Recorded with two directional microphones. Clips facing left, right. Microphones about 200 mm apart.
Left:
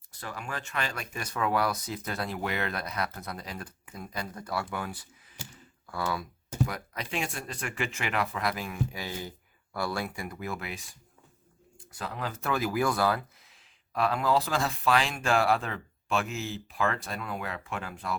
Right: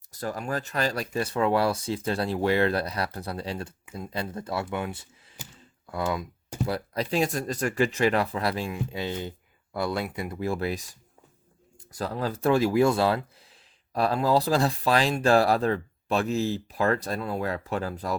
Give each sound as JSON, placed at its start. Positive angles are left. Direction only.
{"t": 0.1, "sound": "speech", "side_deg": -40}
{"t": 6.7, "sound": "speech", "side_deg": -35}